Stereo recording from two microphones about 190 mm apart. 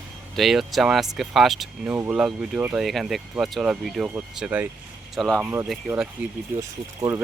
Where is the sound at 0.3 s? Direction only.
Centre (ahead or behind); by 7.2 s 15° right (ahead or behind).